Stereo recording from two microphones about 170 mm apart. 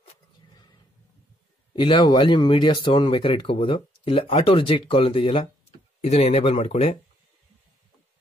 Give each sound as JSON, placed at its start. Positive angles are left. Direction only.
{"t": 1.8, "sound": "speech", "side_deg": 30}